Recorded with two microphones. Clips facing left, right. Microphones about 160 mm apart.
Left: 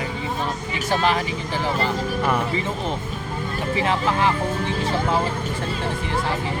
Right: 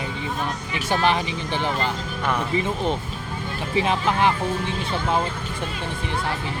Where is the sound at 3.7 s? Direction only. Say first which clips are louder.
Right 1 dB; 20° right (ahead or behind).